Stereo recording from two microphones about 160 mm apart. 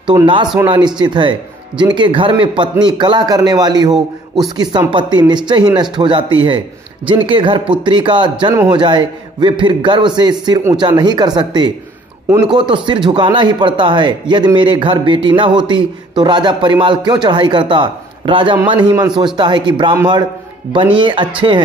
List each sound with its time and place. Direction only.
0.0 s a man's voice: 30° right (ahead or behind)